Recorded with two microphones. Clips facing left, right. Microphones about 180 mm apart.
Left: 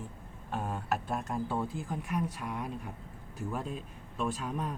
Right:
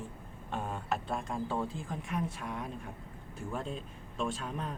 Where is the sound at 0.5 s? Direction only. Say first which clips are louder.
Left 2 dB; 5° left (ahead or behind).